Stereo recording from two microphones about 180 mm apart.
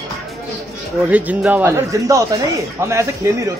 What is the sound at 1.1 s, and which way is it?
Speech, 10° right (ahead or behind).